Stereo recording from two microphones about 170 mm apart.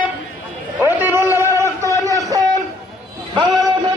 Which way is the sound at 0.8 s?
10° right (ahead or behind).